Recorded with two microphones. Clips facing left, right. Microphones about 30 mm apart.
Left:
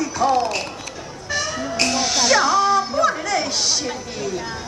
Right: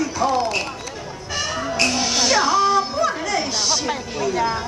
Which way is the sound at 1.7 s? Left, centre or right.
Centre.